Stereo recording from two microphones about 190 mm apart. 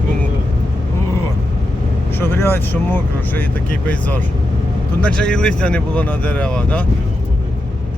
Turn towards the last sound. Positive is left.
turn(degrees=5)  # may be behind; listen again after turning